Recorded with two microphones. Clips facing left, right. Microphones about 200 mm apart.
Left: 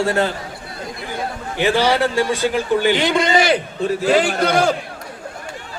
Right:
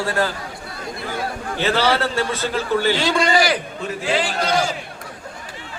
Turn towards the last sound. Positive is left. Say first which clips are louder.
# left 4 dB
turn(degrees=55)  # may be behind; listen again after turning